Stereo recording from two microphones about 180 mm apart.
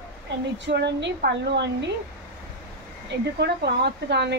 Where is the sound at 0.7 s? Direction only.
75° right (ahead or behind).